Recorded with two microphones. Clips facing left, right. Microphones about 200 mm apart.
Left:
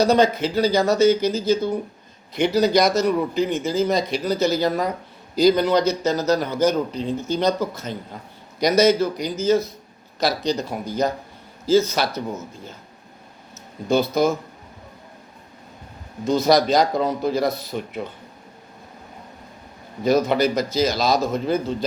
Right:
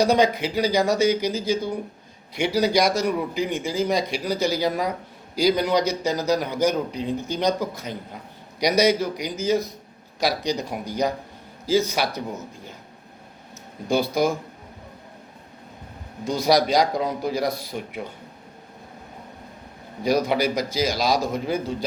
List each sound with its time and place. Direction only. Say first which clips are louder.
0.0 s a man's voice: left 2 dB; 15° right (ahead or behind)
13.8 s a man's voice: left 3 dB; 15° right (ahead or behind)
16.2 s a man's voice: left 3 dB; 10° right (ahead or behind)
20.1 s a man's voice: left 3 dB; 10° right (ahead or behind)